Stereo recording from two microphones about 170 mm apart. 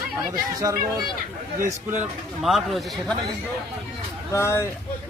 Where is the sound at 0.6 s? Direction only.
20° right (ahead or behind).